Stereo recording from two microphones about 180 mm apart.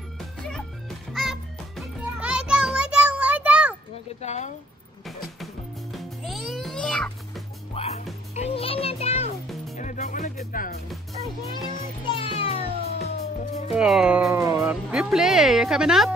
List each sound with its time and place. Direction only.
0.4 s music: 5° left (ahead or behind)
4.2 s a sound: 40° left (ahead or behind)
5.0 s music: centre (ahead or behind)
7.7 s music: 35° left (ahead or behind)
12.1 s music: 30° left (ahead or behind)
13.7 s music: 5° right (ahead or behind)
14.6 s speech: 5° right (ahead or behind)